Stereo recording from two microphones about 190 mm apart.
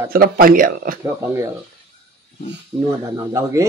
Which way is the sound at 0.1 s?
50° right (ahead or behind).